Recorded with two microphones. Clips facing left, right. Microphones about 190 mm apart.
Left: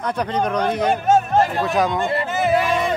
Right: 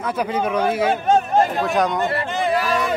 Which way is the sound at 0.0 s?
5° right (ahead or behind).